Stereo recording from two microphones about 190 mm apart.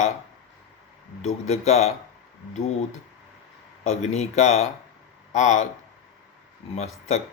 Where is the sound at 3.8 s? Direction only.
35° left (ahead or behind).